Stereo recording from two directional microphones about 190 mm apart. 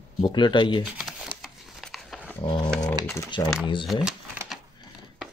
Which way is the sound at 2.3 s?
20° left (ahead or behind).